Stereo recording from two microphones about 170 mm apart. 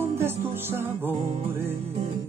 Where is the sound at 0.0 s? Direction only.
15° right (ahead or behind).